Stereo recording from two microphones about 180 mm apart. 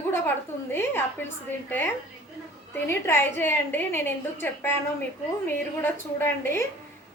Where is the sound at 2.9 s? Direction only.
15° left (ahead or behind).